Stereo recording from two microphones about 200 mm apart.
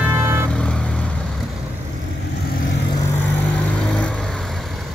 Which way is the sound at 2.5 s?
45° left (ahead or behind).